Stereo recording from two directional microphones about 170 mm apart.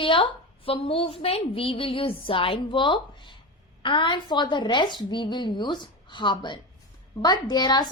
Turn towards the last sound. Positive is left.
turn(degrees=25)  # may be behind; listen again after turning